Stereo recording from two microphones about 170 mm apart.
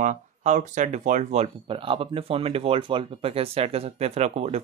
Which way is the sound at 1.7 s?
30° right (ahead or behind).